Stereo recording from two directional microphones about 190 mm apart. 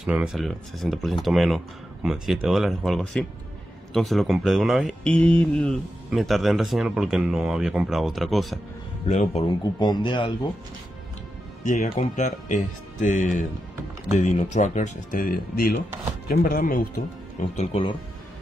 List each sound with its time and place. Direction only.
0.0 s speech: 5° right (ahead or behind)
9.0 s speech: 40° left (ahead or behind)
9.6 s speech: 20° left (ahead or behind)
11.6 s speech: 40° left (ahead or behind)
17.4 s speech: 35° left (ahead or behind)